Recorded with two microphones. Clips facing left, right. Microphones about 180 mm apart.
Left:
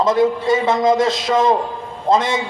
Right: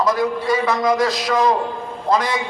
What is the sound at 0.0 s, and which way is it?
A man's voice, 25° left (ahead or behind).